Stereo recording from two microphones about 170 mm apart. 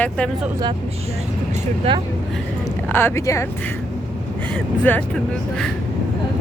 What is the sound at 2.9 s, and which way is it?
Speech, 10° left (ahead or behind).